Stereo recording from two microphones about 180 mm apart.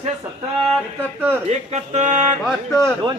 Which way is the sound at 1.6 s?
40° right (ahead or behind).